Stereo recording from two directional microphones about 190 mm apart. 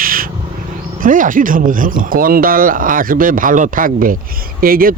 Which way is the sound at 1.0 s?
45° right (ahead or behind).